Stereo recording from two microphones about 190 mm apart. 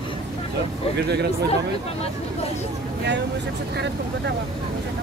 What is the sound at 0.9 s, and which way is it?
Speech, 60° right (ahead or behind).